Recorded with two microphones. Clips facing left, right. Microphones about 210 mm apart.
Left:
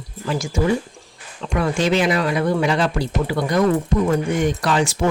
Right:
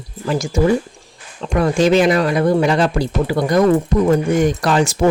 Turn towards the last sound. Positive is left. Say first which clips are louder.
# right 4 dB
turn(degrees=-45)  # may be behind; listen again after turning